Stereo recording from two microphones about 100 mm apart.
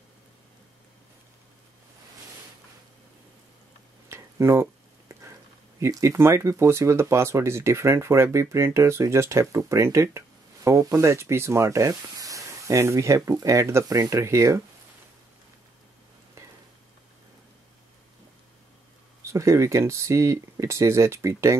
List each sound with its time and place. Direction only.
4.1 s a sound: 25° right (ahead or behind)
5.8 s speech: 30° right (ahead or behind)
19.2 s speech: 30° right (ahead or behind)